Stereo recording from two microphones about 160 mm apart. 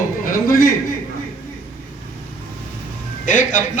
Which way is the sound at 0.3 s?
60° left (ahead or behind).